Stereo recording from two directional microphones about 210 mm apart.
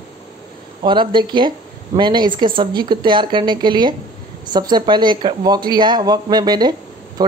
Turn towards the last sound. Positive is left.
turn(degrees=-20)  # may be behind; listen again after turning